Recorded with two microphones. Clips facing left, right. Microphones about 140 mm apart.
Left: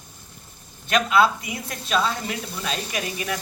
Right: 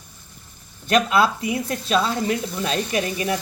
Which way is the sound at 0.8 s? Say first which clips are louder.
Right 1 dB; 35° right (ahead or behind).